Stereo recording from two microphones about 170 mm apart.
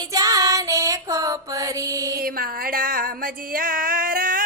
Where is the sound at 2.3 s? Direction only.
55° right (ahead or behind).